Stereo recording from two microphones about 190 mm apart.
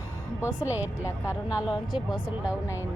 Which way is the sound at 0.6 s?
10° right (ahead or behind).